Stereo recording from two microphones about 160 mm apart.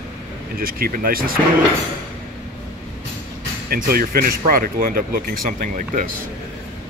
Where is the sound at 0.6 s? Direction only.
65° right (ahead or behind).